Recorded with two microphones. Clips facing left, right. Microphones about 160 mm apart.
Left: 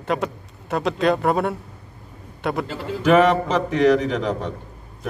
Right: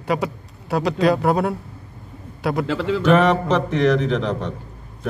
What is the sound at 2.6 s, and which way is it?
Speech, 85° right.